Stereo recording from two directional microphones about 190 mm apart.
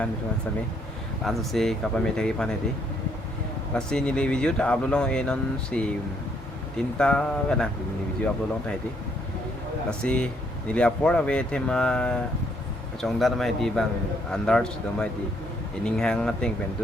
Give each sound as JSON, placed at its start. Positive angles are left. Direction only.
{"t": 1.2, "sound": "speech", "side_deg": 0}
{"t": 3.8, "sound": "speech", "side_deg": 5}
{"t": 7.0, "sound": "speech", "side_deg": 5}
{"t": 10.0, "sound": "speech", "side_deg": 5}